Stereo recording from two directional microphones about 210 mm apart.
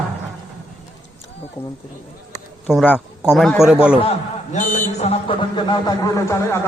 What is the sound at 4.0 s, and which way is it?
A man's voice, 30° left (ahead or behind).